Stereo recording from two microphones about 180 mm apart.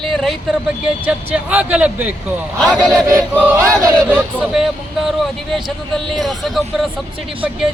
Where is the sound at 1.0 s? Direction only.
10° right (ahead or behind).